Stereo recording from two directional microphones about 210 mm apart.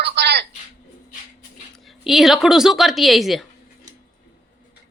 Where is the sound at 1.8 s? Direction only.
Centre (ahead or behind).